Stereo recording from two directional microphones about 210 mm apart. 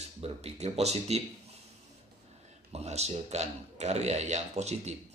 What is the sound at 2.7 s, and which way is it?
A man's voice, 30° right (ahead or behind).